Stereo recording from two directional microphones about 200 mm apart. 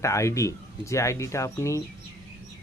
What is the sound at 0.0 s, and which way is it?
Speech, 15° left (ahead or behind).